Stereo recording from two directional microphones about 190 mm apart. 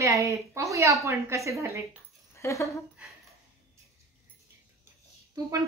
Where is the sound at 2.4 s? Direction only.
15° left (ahead or behind).